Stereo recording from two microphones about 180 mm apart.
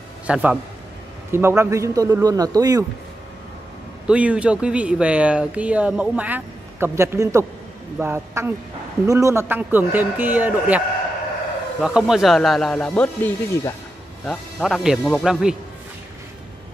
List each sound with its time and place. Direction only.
0.3 s speech: 10° right (ahead or behind)
4.1 s speech: 5° right (ahead or behind)
11.8 s speech: 5° right (ahead or behind)